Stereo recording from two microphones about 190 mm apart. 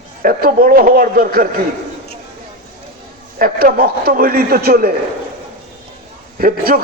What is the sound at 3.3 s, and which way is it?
A man's voice, 50° right (ahead or behind).